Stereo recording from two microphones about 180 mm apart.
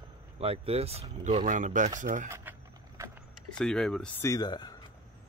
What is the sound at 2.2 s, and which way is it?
Speech, 15° right (ahead or behind).